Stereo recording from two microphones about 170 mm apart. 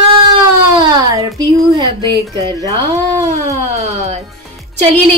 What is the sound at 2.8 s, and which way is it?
Speech, 20° right (ahead or behind).